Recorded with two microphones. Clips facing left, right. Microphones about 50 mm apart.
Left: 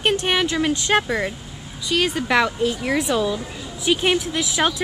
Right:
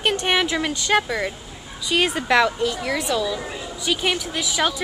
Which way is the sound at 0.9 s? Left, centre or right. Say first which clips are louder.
Right 3 dB; centre.